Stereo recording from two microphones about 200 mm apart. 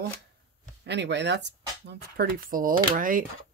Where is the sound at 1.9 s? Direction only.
50° right (ahead or behind).